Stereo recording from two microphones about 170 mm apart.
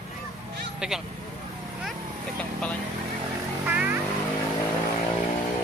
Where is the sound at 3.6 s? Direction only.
10° right (ahead or behind).